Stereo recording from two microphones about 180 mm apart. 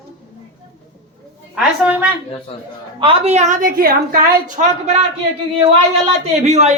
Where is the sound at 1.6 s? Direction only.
5° right (ahead or behind).